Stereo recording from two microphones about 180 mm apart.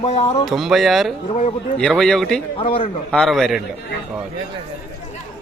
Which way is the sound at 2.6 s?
30° left (ahead or behind).